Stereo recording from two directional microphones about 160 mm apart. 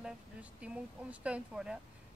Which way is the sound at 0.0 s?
5° right (ahead or behind).